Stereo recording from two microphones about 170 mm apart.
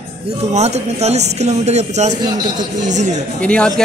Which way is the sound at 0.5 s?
40° right (ahead or behind).